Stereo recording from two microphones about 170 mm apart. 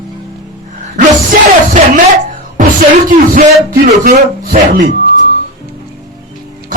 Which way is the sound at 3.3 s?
50° right (ahead or behind).